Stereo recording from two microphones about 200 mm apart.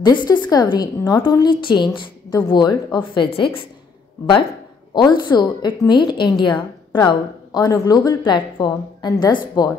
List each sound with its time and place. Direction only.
0.0 s a woman's voice: 20° left (ahead or behind)
4.9 s a woman's voice: 20° left (ahead or behind)